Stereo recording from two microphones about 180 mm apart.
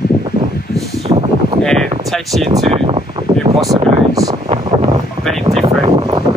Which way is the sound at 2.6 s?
30° right (ahead or behind).